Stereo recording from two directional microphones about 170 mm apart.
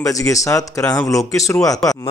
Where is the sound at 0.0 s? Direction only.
20° left (ahead or behind).